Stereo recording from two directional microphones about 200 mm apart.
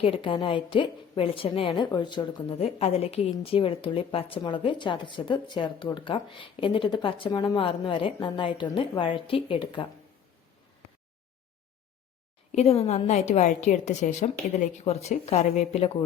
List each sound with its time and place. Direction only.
0.0 s a woman's voice: 25° left (ahead or behind)
12.5 s a woman's voice: 30° left (ahead or behind)